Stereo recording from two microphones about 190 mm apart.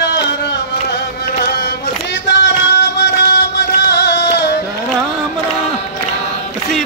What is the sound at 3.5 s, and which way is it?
Music, 60° left (ahead or behind).